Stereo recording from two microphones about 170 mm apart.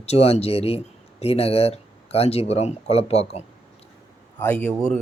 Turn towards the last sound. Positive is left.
turn(degrees=10)  # may be behind; listen again after turning